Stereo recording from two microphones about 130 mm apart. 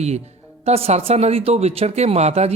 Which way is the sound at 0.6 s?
50° right (ahead or behind).